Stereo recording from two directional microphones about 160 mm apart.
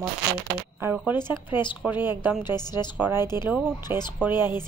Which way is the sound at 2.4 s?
25° left (ahead or behind).